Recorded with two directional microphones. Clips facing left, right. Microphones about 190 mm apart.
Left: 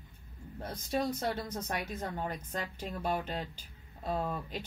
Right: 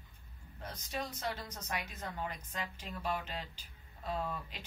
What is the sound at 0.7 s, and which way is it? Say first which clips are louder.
Speech: left 9 dB; 50° left (ahead or behind).